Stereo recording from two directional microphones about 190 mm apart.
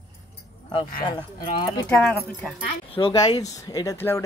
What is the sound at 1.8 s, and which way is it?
Speech, 5° left (ahead or behind).